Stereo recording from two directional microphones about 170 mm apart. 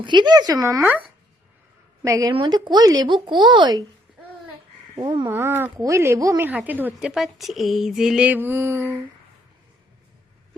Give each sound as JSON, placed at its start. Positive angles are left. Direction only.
{"t": 0.0, "sound": "speech", "side_deg": -25}
{"t": 2.0, "sound": "speech", "side_deg": -20}
{"t": 4.9, "sound": "speech", "side_deg": -25}
{"t": 5.2, "sound": "a woman's voice", "side_deg": -15}